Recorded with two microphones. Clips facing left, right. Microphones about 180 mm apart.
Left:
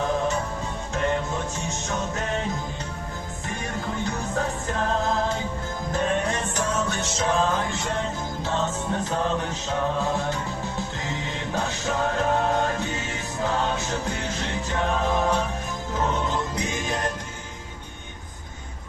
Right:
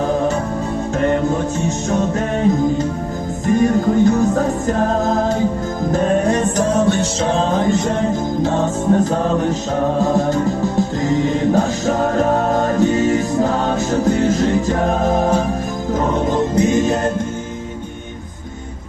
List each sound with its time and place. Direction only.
0.9 s music: 40° right (ahead or behind)